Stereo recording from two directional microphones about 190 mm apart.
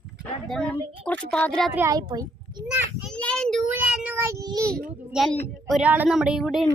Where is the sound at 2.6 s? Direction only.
5° right (ahead or behind).